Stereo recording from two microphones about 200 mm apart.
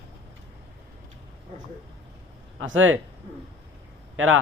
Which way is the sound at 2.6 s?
75° right (ahead or behind).